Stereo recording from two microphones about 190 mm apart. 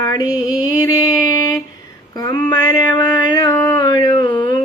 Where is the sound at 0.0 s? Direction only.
20° left (ahead or behind).